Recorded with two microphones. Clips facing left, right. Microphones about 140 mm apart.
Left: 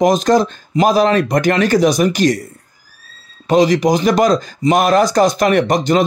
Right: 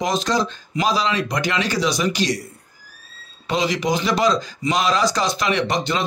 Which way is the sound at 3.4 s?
45° left (ahead or behind).